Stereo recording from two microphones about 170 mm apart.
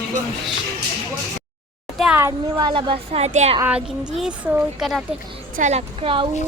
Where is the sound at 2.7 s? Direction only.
30° right (ahead or behind).